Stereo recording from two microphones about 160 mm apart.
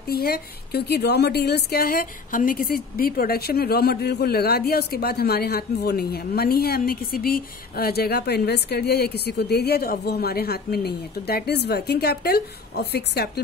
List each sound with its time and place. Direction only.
0.0 s a woman's voice: 75° left (ahead or behind); by 13.3 s 90° left